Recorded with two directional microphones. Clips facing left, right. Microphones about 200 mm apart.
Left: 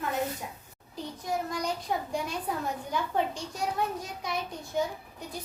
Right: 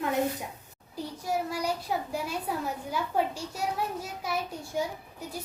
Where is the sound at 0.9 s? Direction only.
10° right (ahead or behind).